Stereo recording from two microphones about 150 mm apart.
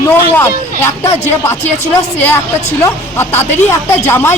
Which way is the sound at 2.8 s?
15° left (ahead or behind).